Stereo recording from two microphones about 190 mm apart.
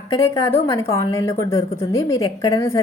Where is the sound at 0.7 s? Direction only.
15° left (ahead or behind).